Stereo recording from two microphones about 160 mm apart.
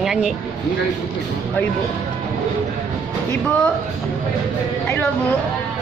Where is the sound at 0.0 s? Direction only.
Centre (ahead or behind).